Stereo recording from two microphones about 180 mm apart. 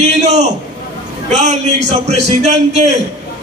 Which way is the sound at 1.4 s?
40° right (ahead or behind).